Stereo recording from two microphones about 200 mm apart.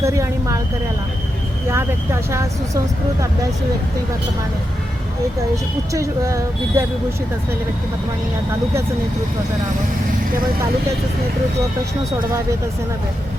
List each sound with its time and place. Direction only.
0.0 s a sound: 15° right (ahead or behind)
1.7 s speech: 15° right (ahead or behind)
5.9 s speech: 15° right (ahead or behind)